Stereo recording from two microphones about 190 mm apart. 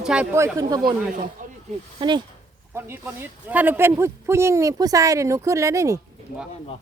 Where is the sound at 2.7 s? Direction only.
10° right (ahead or behind).